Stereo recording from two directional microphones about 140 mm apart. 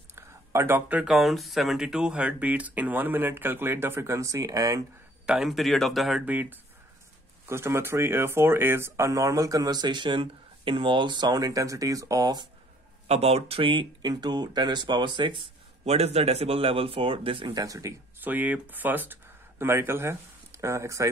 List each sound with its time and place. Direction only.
0.1 s speech: 15° right (ahead or behind)
5.2 s speech: 5° right (ahead or behind); by 12.4 s 25° right (ahead or behind)
13.1 s speech: 45° right (ahead or behind)
15.8 s speech: 50° right (ahead or behind); by 18.3 s 25° right (ahead or behind)
18.3 s speech: 10° right (ahead or behind)